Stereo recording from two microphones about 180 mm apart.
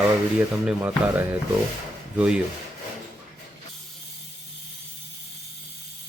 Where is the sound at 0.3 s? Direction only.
5° right (ahead or behind).